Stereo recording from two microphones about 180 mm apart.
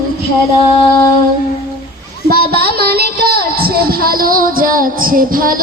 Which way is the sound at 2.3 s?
60° right (ahead or behind).